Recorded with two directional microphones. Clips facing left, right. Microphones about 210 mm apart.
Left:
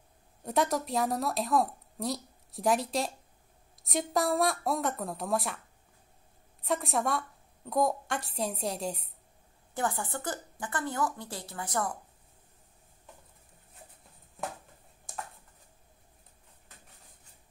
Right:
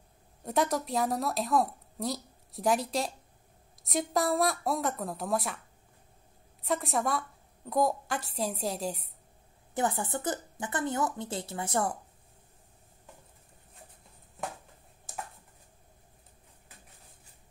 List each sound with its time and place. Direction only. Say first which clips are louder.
0.4 s a woman's voice: even; centre (ahead or behind)
6.6 s a woman's voice: even; centre (ahead or behind)
9.8 s speech: right 2 dB; 20° right (ahead or behind)
15.1 s a sound: even; 5° right (ahead or behind)